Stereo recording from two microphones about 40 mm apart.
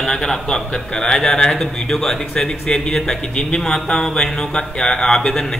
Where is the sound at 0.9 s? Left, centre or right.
Left.